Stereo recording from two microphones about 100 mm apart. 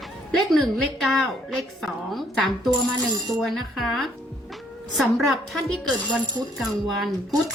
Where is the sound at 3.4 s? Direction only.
Centre (ahead or behind).